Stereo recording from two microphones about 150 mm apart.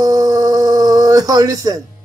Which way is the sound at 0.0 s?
25° right (ahead or behind).